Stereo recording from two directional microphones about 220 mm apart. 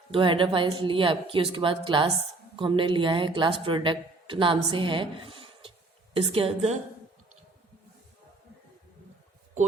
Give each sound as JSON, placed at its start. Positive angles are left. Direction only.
{"t": 0.1, "sound": "speech", "side_deg": -25}